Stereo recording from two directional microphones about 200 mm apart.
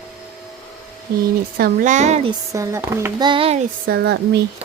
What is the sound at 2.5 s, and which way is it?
Speech, 15° right (ahead or behind).